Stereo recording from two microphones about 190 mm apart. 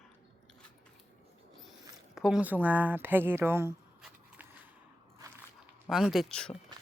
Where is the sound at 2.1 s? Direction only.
5° right (ahead or behind).